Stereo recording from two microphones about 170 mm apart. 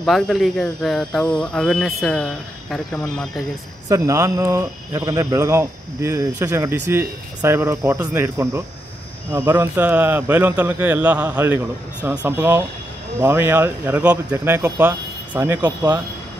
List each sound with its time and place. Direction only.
0.0 s speech: centre (ahead or behind)
3.9 s speech: 20° right (ahead or behind)